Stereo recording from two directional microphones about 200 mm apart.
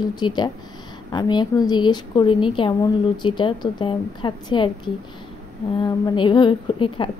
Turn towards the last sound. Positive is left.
turn(degrees=25)  # may be behind; listen again after turning